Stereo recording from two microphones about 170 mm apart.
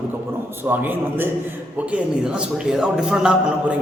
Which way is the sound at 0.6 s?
10° right (ahead or behind).